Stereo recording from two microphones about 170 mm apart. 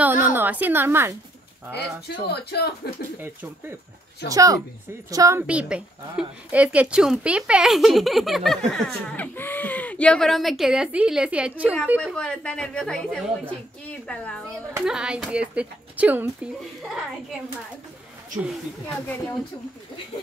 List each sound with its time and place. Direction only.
0.0 s a woman's voice: 10° right (ahead or behind)
2.0 s speech: 75° left (ahead or behind)
4.3 s a woman's voice: 20° right (ahead or behind)
5.5 s a woman's voice: 5° right (ahead or behind)
12.0 s a woman's voice: 5° left (ahead or behind)
14.9 s speech: 5° right (ahead or behind)
18.5 s speech: 10° left (ahead or behind)